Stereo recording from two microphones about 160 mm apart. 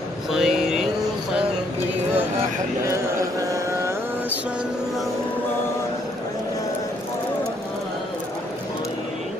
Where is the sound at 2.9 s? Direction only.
20° right (ahead or behind).